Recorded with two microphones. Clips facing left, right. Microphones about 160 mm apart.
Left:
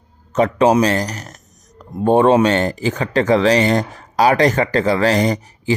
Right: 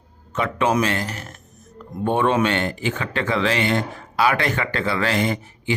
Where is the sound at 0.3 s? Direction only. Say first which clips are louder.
Left 7 dB; 40° left (ahead or behind).